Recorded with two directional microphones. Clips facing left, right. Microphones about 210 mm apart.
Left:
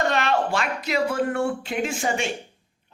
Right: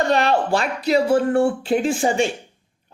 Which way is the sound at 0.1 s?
35° right (ahead or behind).